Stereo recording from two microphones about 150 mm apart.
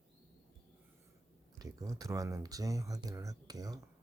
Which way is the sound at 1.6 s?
20° right (ahead or behind).